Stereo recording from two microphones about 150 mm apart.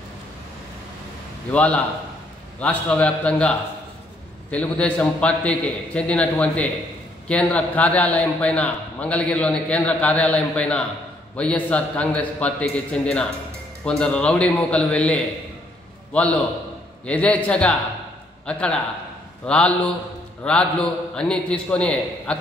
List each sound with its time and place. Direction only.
1.5 s a man's voice: 10° left (ahead or behind)